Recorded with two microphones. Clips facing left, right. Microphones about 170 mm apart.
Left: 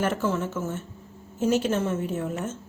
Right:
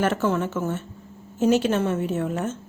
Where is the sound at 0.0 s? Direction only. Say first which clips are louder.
Right 3 dB; 70° right (ahead or behind).